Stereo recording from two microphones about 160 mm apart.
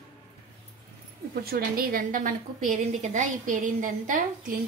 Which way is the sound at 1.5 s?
65° right (ahead or behind).